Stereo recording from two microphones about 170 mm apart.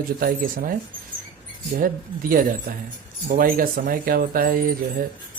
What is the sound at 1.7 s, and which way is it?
Speech, 55° right (ahead or behind).